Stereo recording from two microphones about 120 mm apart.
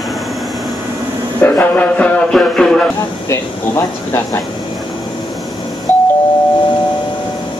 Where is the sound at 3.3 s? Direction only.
25° left (ahead or behind).